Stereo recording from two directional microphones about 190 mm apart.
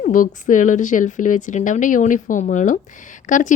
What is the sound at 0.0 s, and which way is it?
A woman's voice, 45° left (ahead or behind).